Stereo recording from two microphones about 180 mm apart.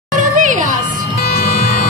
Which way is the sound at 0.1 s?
45° right (ahead or behind).